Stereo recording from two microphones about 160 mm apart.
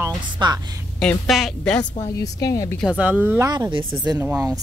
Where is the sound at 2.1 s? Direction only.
20° left (ahead or behind).